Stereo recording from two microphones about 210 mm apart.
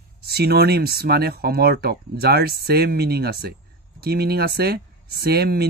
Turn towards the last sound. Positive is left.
turn(degrees=-50)  # may be behind; listen again after turning